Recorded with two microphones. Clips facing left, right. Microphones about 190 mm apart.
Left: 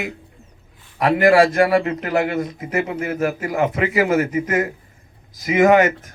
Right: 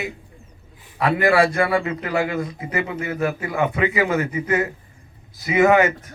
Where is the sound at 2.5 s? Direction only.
45° left (ahead or behind).